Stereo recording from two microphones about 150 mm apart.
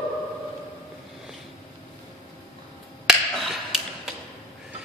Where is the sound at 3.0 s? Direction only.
Centre (ahead or behind).